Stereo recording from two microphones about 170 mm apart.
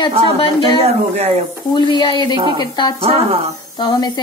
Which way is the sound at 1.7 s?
25° left (ahead or behind).